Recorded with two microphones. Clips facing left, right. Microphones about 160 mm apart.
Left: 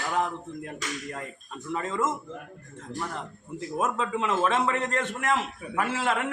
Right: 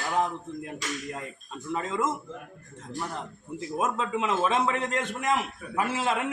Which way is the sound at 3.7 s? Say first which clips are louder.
Even; 15° right (ahead or behind).